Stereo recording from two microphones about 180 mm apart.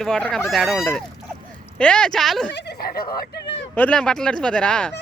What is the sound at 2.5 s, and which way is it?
Speech, 70° left (ahead or behind).